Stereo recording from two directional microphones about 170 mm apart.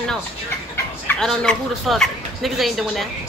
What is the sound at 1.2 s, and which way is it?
Speech, 5° left (ahead or behind).